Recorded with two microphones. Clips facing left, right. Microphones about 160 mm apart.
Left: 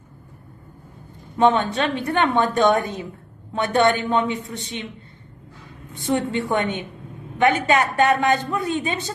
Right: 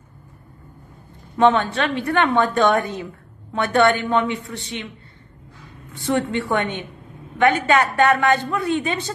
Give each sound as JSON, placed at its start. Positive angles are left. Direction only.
{"t": 1.4, "sound": "a woman's voice", "side_deg": 20}
{"t": 6.0, "sound": "a woman's voice", "side_deg": 20}